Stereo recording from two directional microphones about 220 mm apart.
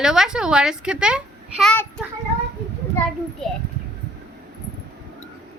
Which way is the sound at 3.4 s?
Centre (ahead or behind).